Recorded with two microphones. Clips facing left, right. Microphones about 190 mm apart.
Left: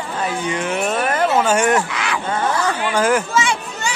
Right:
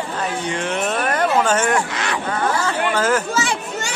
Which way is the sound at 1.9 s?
40° right (ahead or behind).